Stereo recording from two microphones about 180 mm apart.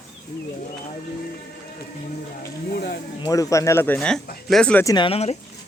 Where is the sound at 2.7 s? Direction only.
60° left (ahead or behind).